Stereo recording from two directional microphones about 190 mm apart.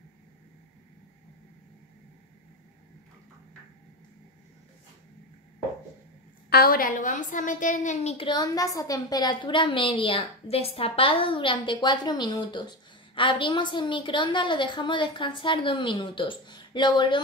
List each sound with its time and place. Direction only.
6.5 s a woman's voice: 50° left (ahead or behind); by 17.2 s 25° left (ahead or behind)